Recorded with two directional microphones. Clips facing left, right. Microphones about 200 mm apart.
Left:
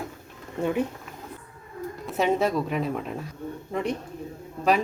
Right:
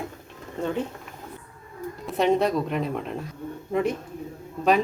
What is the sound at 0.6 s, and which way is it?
Speech, 10° left (ahead or behind).